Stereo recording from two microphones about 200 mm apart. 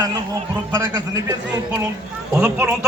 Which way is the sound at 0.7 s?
15° right (ahead or behind).